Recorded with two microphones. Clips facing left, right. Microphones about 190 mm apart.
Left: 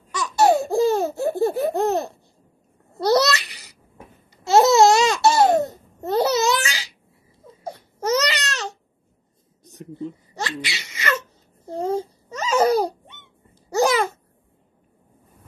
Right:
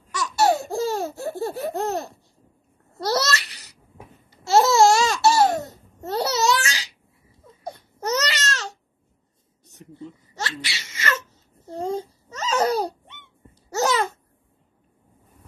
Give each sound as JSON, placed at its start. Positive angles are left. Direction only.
{"t": 0.2, "sound": "laughter", "side_deg": 15}
{"t": 3.0, "sound": "babbling", "side_deg": 15}
{"t": 8.2, "sound": "baby cry", "side_deg": 15}
{"t": 10.4, "sound": "a sound", "side_deg": 15}
{"t": 13.7, "sound": "babbling", "side_deg": 10}